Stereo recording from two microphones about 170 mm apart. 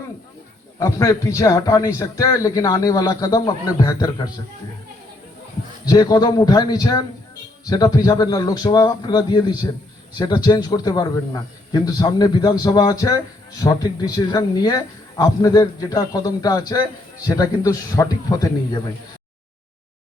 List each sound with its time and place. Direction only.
0.8 s a man's voice: 20° left (ahead or behind)
5.8 s a man's voice: 20° left (ahead or behind)